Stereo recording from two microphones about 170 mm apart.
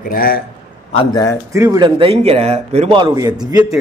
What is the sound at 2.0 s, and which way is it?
A man's voice, 35° right (ahead or behind).